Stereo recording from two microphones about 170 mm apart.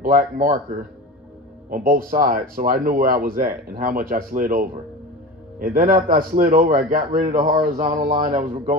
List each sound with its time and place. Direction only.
0.0 s a man's voice: 55° right (ahead or behind)